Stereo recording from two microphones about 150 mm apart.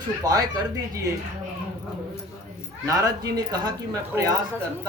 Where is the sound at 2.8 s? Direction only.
25° right (ahead or behind).